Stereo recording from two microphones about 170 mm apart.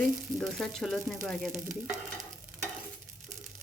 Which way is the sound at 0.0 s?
Centre (ahead or behind).